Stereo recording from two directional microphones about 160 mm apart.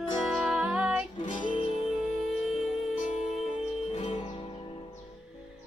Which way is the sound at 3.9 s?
35° left (ahead or behind).